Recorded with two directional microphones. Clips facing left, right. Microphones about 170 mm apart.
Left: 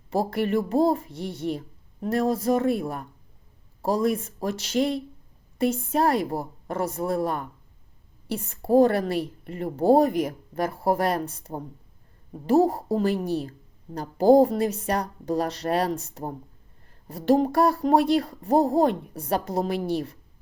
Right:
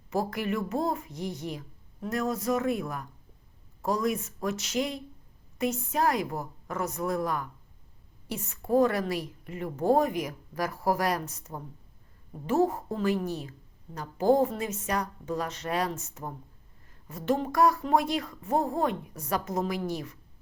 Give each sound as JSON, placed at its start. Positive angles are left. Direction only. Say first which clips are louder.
{"t": 0.1, "sound": "a woman's voice", "louder": "left 5 dB", "side_deg": 30}